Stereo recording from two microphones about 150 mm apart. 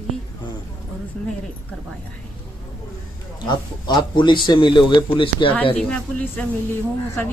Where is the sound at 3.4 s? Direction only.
30° left (ahead or behind).